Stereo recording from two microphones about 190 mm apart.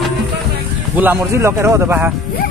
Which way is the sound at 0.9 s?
10° right (ahead or behind).